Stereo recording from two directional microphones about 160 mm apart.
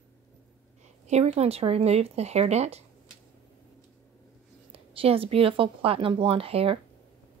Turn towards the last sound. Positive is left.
turn(degrees=-35)  # may be behind; listen again after turning